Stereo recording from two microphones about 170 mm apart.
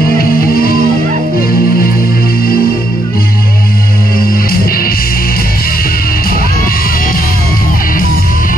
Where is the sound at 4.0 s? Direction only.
60° left (ahead or behind).